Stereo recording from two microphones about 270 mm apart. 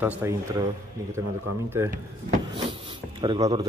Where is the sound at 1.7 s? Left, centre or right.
Centre.